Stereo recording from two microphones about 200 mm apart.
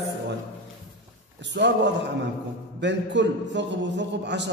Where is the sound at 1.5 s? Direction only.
60° right (ahead or behind).